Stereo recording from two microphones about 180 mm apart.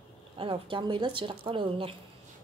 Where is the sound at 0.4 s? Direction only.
30° right (ahead or behind).